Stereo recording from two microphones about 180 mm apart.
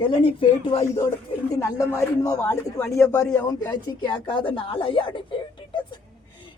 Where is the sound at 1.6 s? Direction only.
15° left (ahead or behind).